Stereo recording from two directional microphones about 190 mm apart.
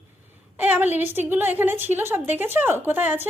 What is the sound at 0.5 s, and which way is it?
A woman's voice, 10° right (ahead or behind).